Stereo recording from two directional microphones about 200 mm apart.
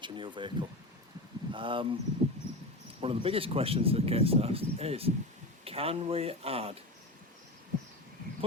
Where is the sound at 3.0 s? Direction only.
30° right (ahead or behind).